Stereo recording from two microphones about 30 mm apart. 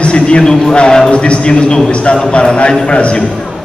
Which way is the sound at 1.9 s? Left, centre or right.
Left.